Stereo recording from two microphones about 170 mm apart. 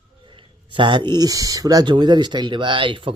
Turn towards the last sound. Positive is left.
turn(degrees=-30)  # may be behind; listen again after turning